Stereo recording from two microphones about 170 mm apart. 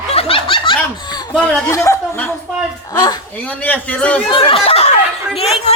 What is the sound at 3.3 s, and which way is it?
Speech, 10° left (ahead or behind).